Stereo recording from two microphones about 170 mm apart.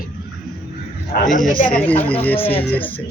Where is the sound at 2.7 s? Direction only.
10° left (ahead or behind).